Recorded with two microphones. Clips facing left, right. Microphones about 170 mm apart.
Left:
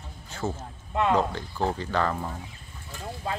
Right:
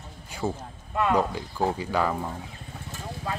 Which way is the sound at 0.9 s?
25° left (ahead or behind).